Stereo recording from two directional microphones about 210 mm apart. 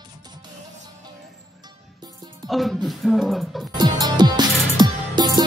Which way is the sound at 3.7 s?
20° right (ahead or behind).